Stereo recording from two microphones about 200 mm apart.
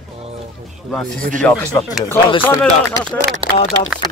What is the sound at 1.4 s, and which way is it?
Speech, 10° left (ahead or behind).